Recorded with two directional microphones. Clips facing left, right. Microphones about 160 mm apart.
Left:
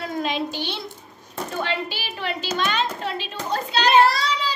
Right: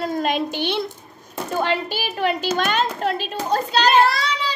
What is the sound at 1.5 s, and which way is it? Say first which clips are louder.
A child's voice: right 5 dB; 45° right (ahead or behind).